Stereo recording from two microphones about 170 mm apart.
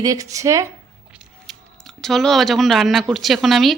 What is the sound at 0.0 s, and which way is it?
Speech, 20° right (ahead or behind).